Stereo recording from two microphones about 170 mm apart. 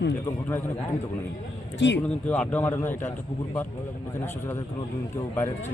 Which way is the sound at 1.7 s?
90° left.